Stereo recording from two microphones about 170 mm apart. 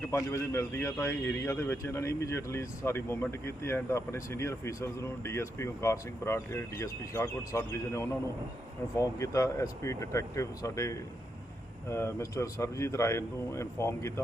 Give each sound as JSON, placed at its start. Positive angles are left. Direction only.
{"t": 0.1, "sound": "a man's voice", "side_deg": 15}